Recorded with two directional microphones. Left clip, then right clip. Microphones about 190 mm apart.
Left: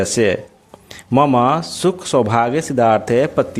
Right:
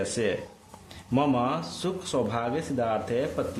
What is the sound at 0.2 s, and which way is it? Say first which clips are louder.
Speech: left 12 dB; 35° left (ahead or behind).